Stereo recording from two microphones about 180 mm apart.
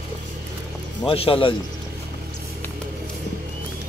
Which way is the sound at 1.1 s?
30° left (ahead or behind).